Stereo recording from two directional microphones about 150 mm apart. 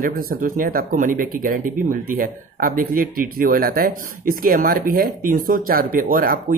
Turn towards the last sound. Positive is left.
turn(degrees=-70)  # may be behind; listen again after turning